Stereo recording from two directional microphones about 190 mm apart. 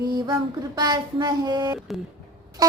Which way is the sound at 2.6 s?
20° right (ahead or behind).